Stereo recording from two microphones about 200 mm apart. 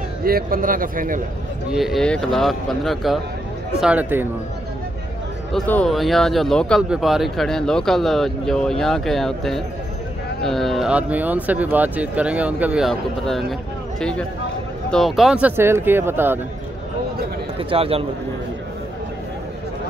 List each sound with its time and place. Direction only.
0.2 s a man's voice: 45° right (ahead or behind)
1.7 s speech: centre (ahead or behind)
5.5 s speech: 5° left (ahead or behind); by 16.3 s 10° right (ahead or behind)
17.6 s a man's voice: 30° right (ahead or behind)